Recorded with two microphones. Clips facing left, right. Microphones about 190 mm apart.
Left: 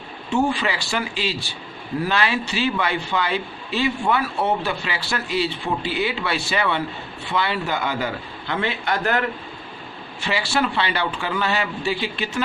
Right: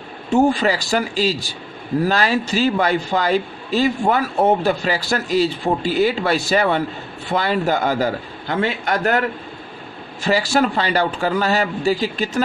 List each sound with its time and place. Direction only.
0.3 s a man's voice: 40° right (ahead or behind)
10.2 s a man's voice: 40° right (ahead or behind)